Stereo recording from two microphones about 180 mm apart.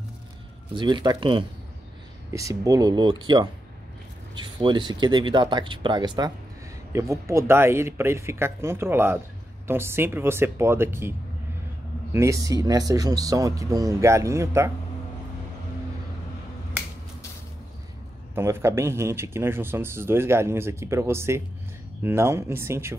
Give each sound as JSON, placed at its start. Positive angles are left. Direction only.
{"t": 0.7, "sound": "speech", "side_deg": -25}
{"t": 18.3, "sound": "speech", "side_deg": -15}